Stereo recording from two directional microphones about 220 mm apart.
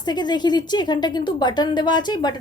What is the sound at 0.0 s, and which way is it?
Speech, 20° left (ahead or behind).